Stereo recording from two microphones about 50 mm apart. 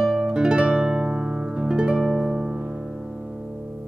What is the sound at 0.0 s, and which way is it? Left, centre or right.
Music, centre.